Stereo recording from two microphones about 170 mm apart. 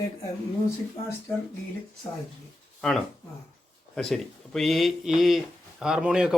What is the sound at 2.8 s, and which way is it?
Speech, centre (ahead or behind).